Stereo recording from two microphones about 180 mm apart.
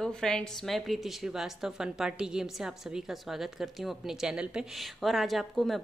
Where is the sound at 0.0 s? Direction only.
5° left (ahead or behind).